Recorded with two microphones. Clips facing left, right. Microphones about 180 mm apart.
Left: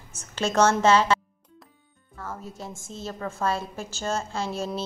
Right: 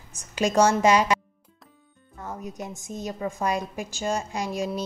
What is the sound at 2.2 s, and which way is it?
A woman's voice, 20° right (ahead or behind).